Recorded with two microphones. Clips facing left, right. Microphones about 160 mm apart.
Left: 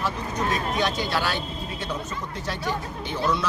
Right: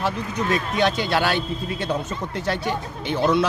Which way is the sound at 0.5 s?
65° right (ahead or behind).